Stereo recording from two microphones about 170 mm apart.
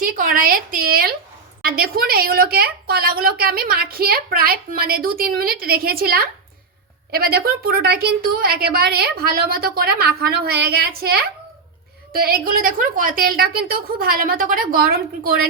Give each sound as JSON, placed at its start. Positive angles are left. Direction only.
{"t": 0.0, "sound": "a woman's voice", "side_deg": -55}